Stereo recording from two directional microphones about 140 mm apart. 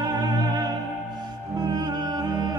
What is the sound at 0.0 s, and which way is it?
Music, 30° right (ahead or behind).